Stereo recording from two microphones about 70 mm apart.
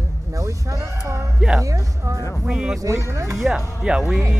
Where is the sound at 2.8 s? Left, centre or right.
Right.